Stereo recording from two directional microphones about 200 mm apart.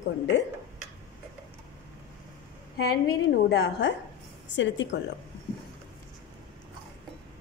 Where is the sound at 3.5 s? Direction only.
60° left (ahead or behind).